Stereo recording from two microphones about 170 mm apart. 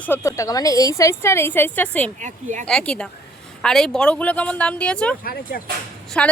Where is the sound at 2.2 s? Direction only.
45° right (ahead or behind).